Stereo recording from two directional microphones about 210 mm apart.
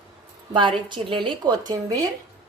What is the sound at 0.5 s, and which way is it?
Speech, 20° right (ahead or behind).